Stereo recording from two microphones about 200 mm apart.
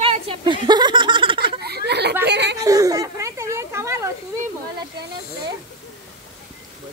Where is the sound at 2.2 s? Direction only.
60° right (ahead or behind).